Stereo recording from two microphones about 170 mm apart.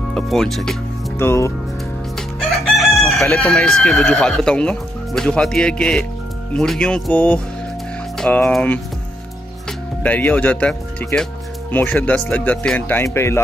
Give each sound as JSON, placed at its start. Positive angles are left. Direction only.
{"t": 0.1, "sound": "speech", "side_deg": 0}
{"t": 1.1, "sound": "speech", "side_deg": 15}
{"t": 2.1, "sound": "chicken", "side_deg": 0}
{"t": 3.0, "sound": "speech", "side_deg": 0}